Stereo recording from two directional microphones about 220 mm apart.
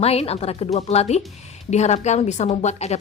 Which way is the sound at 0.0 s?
25° left (ahead or behind).